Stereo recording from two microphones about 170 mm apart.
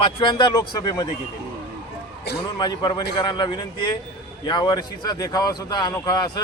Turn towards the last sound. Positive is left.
turn(degrees=20)  # may be behind; listen again after turning